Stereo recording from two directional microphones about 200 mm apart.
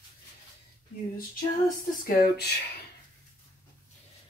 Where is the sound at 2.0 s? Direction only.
50° left (ahead or behind).